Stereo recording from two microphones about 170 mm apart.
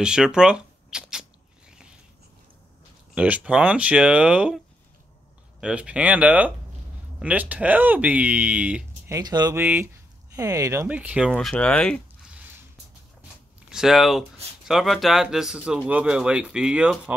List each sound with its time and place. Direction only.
0.0 s speech: 5° right (ahead or behind)
1.7 s a sound: 5° right (ahead or behind)
3.2 s speech: 10° right (ahead or behind)
5.6 s speech: 5° right (ahead or behind)
9.1 s speech: 25° right (ahead or behind); by 11.3 s 5° right (ahead or behind)
11.3 s speech: 5° left (ahead or behind)
13.7 s speech: centre (ahead or behind)